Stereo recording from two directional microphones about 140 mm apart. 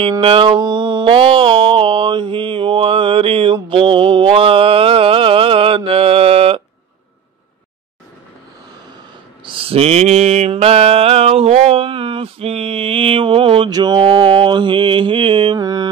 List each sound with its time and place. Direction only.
0.2 s mantra: 40° right (ahead or behind)
9.4 s mantra: 40° right (ahead or behind)